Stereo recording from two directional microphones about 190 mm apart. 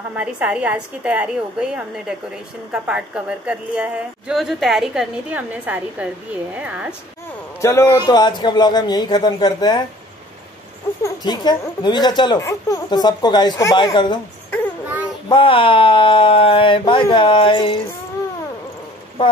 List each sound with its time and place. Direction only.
0.1 s a woman's voice: 5° right (ahead or behind)
7.6 s speech: 15° left (ahead or behind)
11.0 s speech: 20° left (ahead or behind)
15.2 s speech: 25° left (ahead or behind)